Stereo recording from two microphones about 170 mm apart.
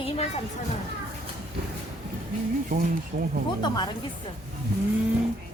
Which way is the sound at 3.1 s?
50° right (ahead or behind).